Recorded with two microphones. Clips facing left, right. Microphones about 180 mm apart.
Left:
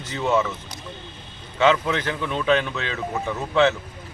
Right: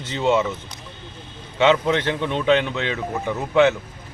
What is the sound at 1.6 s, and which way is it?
A man's voice, 25° right (ahead or behind).